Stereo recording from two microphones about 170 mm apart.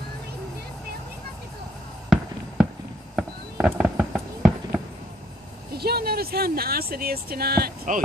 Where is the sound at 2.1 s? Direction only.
Centre (ahead or behind).